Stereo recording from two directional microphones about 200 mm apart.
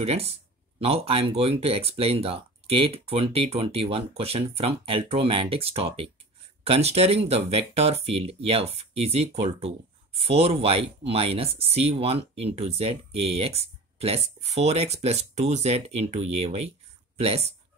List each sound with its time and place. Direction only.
0.0 s speech: 30° right (ahead or behind)